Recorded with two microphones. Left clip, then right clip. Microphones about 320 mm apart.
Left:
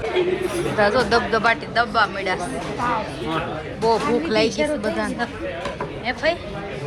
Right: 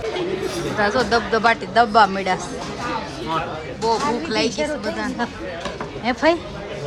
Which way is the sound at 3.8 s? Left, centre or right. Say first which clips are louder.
Left 1 dB; centre.